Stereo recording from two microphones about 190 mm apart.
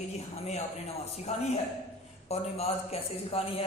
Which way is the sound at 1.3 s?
35° left (ahead or behind).